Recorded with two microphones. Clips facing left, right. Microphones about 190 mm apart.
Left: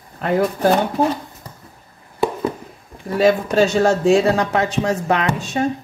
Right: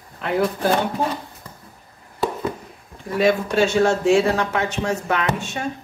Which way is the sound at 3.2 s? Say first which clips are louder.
Left 3 dB; 40° left (ahead or behind).